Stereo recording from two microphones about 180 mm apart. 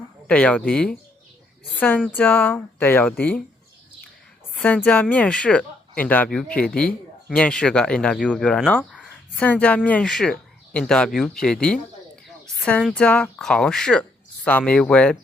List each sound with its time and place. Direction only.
0.3 s speech: 5° left (ahead or behind)
4.5 s speech: 5° left (ahead or behind)